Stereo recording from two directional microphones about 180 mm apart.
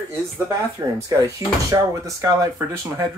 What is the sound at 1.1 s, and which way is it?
Speech, 20° right (ahead or behind).